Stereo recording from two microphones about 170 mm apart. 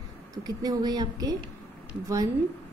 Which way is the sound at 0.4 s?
25° right (ahead or behind).